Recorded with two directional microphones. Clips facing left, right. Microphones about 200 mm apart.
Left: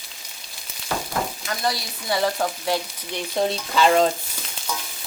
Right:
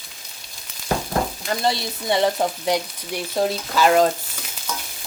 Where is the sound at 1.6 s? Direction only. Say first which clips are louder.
Right 3 dB; 25° right (ahead or behind).